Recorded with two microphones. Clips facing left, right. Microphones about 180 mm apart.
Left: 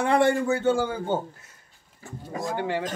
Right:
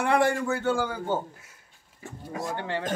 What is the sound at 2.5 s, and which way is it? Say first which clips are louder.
Speech: left 5 dB; 10° left (ahead or behind).